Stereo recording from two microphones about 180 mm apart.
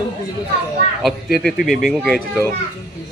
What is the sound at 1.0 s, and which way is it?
A man's voice, centre (ahead or behind).